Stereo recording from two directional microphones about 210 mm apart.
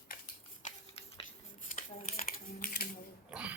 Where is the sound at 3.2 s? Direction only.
5° right (ahead or behind).